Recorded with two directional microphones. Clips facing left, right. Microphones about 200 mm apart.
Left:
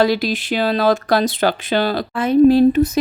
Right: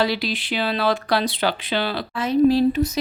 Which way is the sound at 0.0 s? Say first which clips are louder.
Left 6 dB; 45° left (ahead or behind).